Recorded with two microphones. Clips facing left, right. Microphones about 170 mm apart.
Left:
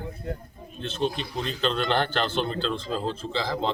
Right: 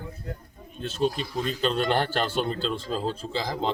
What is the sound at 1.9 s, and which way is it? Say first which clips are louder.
Speech: even; 10° right (ahead or behind).